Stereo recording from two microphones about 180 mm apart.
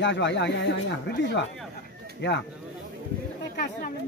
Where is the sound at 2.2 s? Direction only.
75° left (ahead or behind).